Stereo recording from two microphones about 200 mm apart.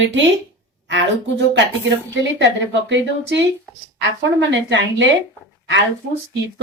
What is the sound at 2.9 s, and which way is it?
A woman's voice, 65° right (ahead or behind).